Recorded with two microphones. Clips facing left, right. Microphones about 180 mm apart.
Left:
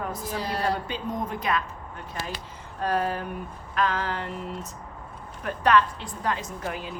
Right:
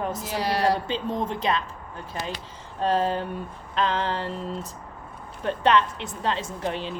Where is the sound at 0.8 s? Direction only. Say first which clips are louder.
Right 3 dB; 25° right (ahead or behind).